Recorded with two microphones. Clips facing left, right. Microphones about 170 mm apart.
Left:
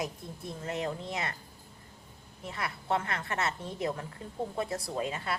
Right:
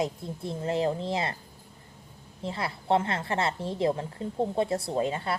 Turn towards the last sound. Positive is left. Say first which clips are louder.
# right 5 dB
turn(degrees=-30)  # may be behind; listen again after turning